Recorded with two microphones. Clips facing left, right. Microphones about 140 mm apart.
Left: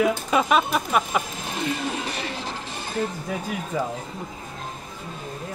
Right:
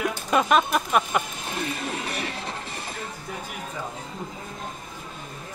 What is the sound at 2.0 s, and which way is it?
Music, 30° left (ahead or behind).